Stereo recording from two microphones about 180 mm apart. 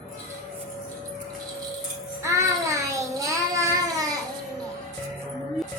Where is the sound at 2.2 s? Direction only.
15° right (ahead or behind).